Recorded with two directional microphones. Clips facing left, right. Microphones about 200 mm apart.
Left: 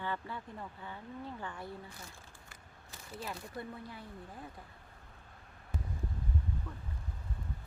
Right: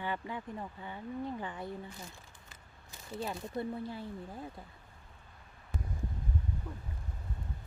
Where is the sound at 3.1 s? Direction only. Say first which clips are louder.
Right 5 dB; 25° right (ahead or behind).